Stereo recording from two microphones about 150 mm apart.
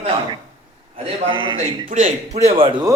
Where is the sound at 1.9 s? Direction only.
60° right (ahead or behind).